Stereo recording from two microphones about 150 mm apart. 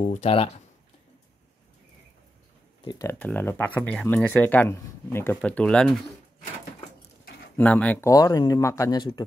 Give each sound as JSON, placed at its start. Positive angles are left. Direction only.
{"t": 0.1, "sound": "speech", "side_deg": 45}
{"t": 3.0, "sound": "speech", "side_deg": 15}
{"t": 7.5, "sound": "speech", "side_deg": 10}
{"t": 8.1, "sound": "speech", "side_deg": 25}